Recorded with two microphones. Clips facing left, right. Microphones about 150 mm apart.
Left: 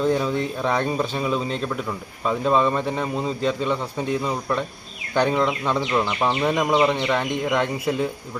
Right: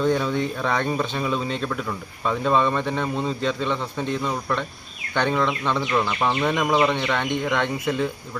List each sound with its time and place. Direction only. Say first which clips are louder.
0.0 s a man's voice: even; 5° left (ahead or behind)